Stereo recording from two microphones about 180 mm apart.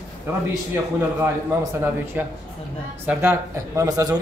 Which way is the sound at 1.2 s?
15° right (ahead or behind).